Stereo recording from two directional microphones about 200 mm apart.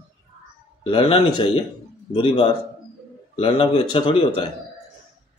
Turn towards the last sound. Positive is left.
turn(degrees=25)  # may be behind; listen again after turning